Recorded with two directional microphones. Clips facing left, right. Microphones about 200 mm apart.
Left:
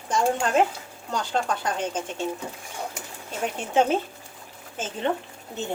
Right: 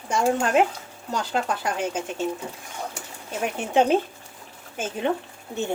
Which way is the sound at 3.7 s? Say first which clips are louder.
Right 2 dB; 15° right (ahead or behind).